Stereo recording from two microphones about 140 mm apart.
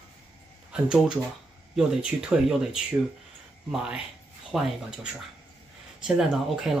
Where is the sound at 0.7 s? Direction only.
5° right (ahead or behind).